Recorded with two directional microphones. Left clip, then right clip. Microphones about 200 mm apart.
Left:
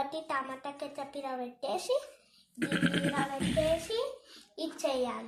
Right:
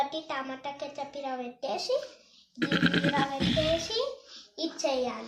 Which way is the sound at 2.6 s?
10° right (ahead or behind).